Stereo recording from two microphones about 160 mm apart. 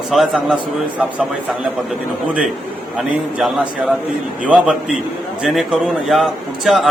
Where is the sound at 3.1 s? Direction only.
Centre (ahead or behind).